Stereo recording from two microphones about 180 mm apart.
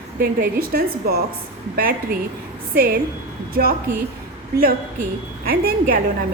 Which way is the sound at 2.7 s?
55° right (ahead or behind).